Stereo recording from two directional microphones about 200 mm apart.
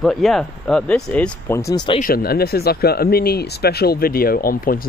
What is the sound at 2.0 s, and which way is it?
Speech, 50° left (ahead or behind).